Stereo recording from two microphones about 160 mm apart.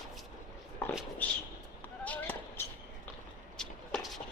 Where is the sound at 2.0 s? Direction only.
10° left (ahead or behind).